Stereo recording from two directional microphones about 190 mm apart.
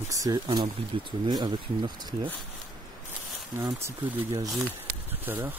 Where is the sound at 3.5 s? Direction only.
15° right (ahead or behind).